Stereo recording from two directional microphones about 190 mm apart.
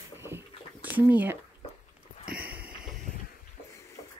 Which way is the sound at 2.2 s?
50° right (ahead or behind).